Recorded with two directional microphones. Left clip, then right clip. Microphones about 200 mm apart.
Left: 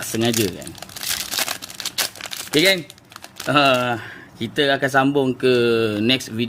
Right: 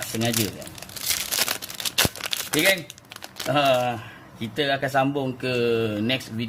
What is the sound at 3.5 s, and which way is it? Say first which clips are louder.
Speech: left 4 dB; 45° left (ahead or behind).